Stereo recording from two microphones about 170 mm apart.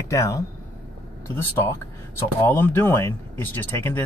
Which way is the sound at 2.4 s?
10° left (ahead or behind).